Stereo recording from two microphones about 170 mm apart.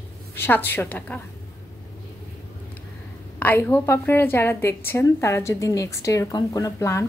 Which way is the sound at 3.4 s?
10° left (ahead or behind).